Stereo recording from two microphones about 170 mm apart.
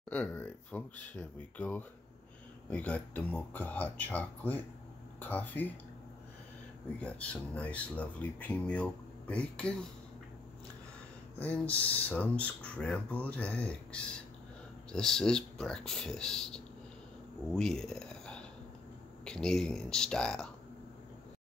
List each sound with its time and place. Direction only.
0.1 s speech: 10° left (ahead or behind)
7.0 s speech: 5° left (ahead or behind)
11.3 s speech: 10° left (ahead or behind)
17.6 s a sound: 5° left (ahead or behind)
19.2 s speech: 5° left (ahead or behind)